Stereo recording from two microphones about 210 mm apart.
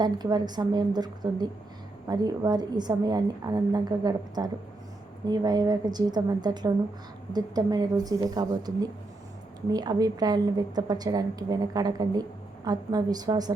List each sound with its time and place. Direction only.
0.0 s a woman's voice: 20° right (ahead or behind)